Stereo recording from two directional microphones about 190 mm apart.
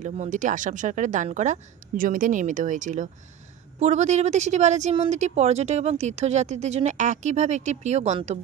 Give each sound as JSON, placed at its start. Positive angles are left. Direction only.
{"t": 0.0, "sound": "speech", "side_deg": -40}